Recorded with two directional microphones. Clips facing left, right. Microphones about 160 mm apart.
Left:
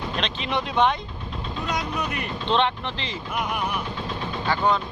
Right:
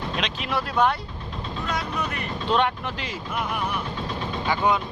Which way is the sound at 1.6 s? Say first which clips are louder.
Left 1 dB; 15° left (ahead or behind).